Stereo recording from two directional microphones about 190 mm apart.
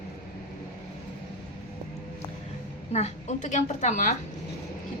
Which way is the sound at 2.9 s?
35° left (ahead or behind).